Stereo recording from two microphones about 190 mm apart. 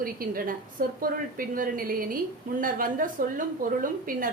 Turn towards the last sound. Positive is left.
turn(degrees=-45)  # may be behind; listen again after turning